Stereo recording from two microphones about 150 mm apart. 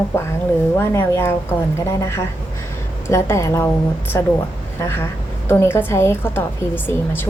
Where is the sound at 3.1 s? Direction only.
20° left (ahead or behind).